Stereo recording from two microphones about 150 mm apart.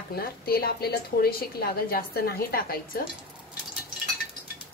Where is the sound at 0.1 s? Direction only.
90° left.